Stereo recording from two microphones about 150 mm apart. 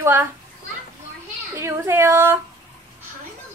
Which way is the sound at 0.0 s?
15° right (ahead or behind).